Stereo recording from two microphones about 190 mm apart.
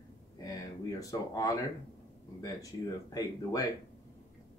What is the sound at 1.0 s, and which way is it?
Speech, 20° left (ahead or behind).